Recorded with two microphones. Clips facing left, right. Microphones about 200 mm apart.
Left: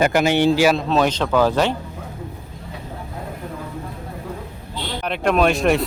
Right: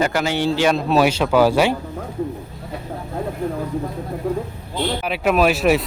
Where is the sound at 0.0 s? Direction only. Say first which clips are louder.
Left 3 dB; 20° left (ahead or behind).